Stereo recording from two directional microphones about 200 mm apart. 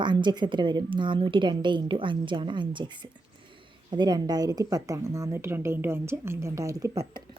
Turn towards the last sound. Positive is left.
turn(degrees=-15)  # may be behind; listen again after turning